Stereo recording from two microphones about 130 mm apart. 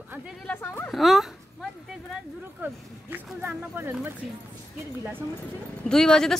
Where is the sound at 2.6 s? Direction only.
15° right (ahead or behind).